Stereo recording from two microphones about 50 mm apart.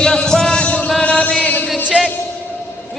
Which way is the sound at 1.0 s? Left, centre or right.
Left.